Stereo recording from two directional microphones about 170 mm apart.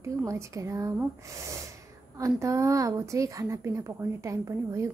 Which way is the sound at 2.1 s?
20° right (ahead or behind).